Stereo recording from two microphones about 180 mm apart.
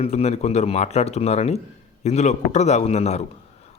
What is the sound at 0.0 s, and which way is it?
Speech, 35° left (ahead or behind).